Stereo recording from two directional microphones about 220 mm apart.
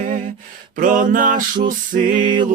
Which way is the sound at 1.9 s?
35° right (ahead or behind).